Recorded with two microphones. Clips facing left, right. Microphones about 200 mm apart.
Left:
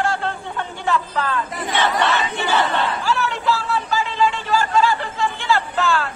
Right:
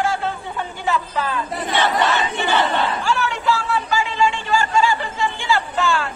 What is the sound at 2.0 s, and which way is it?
Battle cry, centre (ahead or behind).